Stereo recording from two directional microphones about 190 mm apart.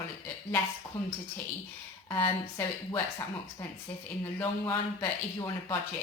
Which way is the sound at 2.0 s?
20° left (ahead or behind).